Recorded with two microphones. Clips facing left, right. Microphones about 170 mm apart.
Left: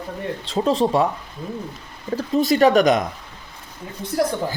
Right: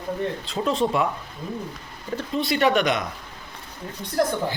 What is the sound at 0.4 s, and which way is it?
Speech, 35° left (ahead or behind).